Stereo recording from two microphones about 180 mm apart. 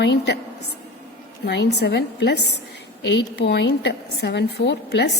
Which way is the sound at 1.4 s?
70° left (ahead or behind).